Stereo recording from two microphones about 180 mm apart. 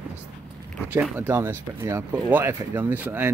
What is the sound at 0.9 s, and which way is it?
Speech, 10° right (ahead or behind).